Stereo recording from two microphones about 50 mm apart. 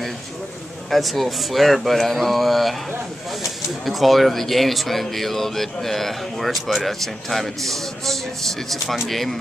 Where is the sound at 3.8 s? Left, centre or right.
Centre.